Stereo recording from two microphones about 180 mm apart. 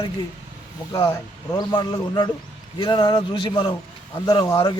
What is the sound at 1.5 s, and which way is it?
Speech, 20° left (ahead or behind).